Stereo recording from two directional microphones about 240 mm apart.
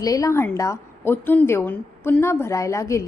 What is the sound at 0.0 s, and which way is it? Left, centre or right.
A woman's voice, centre.